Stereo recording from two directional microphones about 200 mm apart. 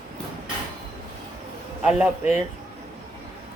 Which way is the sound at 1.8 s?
5° right (ahead or behind).